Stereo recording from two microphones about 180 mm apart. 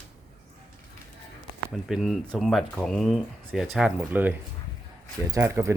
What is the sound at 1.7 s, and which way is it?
Speech, centre (ahead or behind).